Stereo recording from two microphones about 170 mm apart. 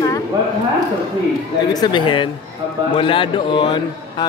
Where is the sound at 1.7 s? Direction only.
25° left (ahead or behind).